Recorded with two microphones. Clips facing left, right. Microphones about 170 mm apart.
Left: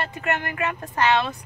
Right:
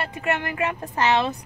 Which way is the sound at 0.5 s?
20° right (ahead or behind).